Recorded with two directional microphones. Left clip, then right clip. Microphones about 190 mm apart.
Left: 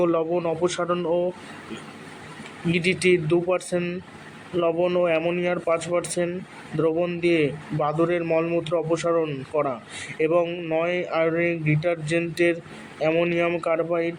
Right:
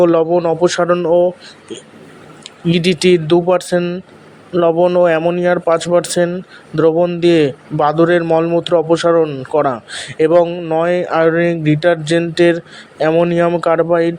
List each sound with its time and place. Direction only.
0.0 s a man's voice: 35° right (ahead or behind)
2.6 s a man's voice: 35° right (ahead or behind)